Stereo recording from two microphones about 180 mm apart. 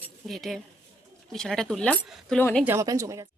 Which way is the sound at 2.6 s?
15° right (ahead or behind).